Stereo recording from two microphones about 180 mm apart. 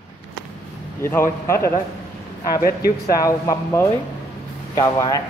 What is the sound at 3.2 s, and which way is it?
A man's voice, 20° left (ahead or behind).